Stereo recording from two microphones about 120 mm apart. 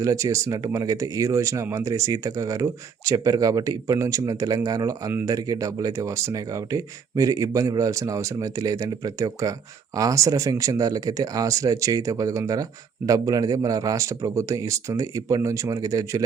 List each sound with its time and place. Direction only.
0.0 s speech: 25° right (ahead or behind)